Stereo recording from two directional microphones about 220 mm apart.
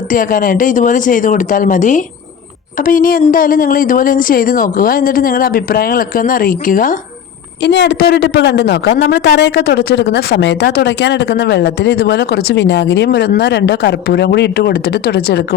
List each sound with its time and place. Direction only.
0.1 s speech: 40° left (ahead or behind)
7.6 s a man's voice: 50° left (ahead or behind)